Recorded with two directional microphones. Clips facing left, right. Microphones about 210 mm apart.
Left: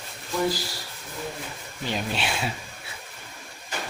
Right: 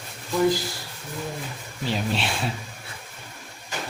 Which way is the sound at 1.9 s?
Centre (ahead or behind).